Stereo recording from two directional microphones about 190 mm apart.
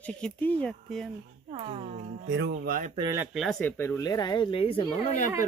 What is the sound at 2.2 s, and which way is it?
Speech, 75° right (ahead or behind).